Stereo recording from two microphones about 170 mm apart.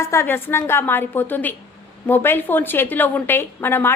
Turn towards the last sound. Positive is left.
turn(degrees=15)  # may be behind; listen again after turning